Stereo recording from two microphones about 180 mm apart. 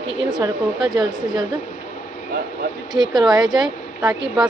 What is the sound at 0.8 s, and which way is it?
Speech, 20° right (ahead or behind).